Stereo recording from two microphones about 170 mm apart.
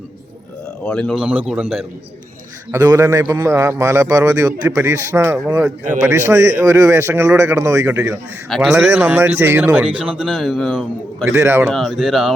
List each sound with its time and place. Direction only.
0.9 s a man's voice: 5° left (ahead or behind)
2.7 s speech: 20° right (ahead or behind)
7.9 s a man's voice: centre (ahead or behind)
11.3 s speech: 10° right (ahead or behind)
11.7 s a man's voice: centre (ahead or behind)